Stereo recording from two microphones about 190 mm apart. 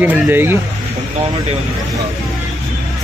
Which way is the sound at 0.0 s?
10° right (ahead or behind).